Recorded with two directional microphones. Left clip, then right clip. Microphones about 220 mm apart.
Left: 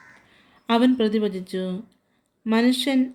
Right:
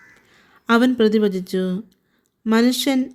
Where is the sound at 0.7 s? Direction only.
55° right (ahead or behind).